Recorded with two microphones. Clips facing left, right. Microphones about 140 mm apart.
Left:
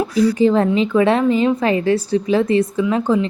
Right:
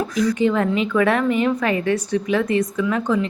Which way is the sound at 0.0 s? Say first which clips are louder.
Left 4 dB; 30° left (ahead or behind).